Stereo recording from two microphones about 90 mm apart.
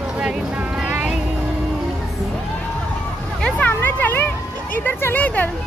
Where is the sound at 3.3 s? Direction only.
15° left (ahead or behind).